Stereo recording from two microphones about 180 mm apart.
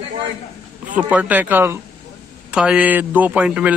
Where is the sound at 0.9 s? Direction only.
10° right (ahead or behind).